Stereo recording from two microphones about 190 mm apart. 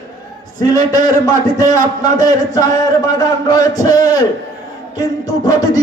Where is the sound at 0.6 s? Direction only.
20° left (ahead or behind).